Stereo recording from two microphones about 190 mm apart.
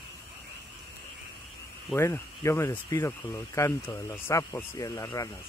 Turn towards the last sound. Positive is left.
turn(degrees=20)  # may be behind; listen again after turning